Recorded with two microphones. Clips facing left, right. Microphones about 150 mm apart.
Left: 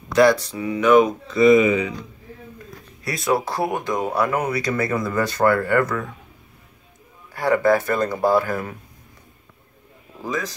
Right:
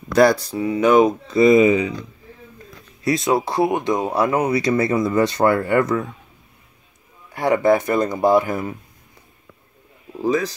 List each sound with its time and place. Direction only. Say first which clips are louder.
0.1 s speech: right 1 dB; 35° right (ahead or behind)
3.0 s speech: right 3 dB; 25° right (ahead or behind)
7.3 s speech: right 1 dB; 20° right (ahead or behind)
10.2 s speech: right 7 dB; 30° right (ahead or behind)